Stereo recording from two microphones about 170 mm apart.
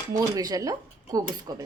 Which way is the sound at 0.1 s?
20° right (ahead or behind).